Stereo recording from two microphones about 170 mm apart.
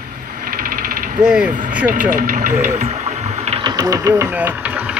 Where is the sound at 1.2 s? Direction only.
5° right (ahead or behind).